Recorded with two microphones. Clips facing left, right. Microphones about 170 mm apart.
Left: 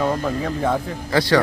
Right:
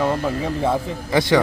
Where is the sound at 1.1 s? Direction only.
20° right (ahead or behind).